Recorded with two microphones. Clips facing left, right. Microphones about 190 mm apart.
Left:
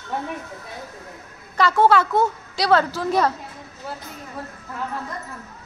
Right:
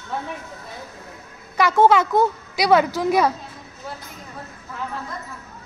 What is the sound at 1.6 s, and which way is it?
A woman's voice, 20° right (ahead or behind).